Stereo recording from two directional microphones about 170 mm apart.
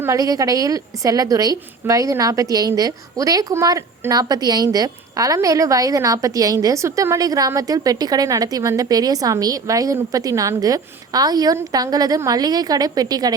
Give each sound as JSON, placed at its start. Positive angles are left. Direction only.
{"t": 0.0, "sound": "a woman's voice", "side_deg": -20}